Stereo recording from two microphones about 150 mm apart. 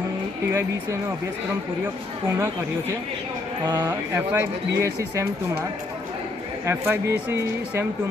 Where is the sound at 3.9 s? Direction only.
15° right (ahead or behind).